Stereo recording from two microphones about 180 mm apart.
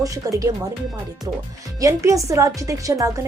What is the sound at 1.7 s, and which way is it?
A woman's voice, 20° right (ahead or behind).